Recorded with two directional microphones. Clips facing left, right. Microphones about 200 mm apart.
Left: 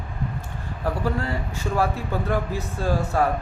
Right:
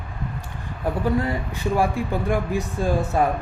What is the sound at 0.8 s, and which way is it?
Speech, 20° right (ahead or behind).